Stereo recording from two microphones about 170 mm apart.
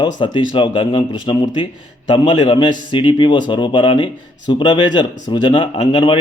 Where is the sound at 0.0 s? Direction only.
30° left (ahead or behind).